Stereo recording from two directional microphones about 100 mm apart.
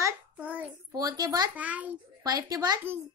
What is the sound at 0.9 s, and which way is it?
Speech, 40° right (ahead or behind).